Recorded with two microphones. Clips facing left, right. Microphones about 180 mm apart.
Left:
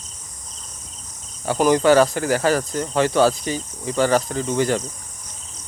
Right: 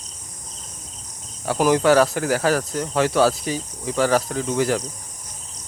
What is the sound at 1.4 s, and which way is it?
Speech, centre (ahead or behind).